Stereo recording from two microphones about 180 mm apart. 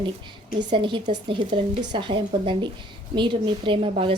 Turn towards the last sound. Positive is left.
turn(degrees=-30)  # may be behind; listen again after turning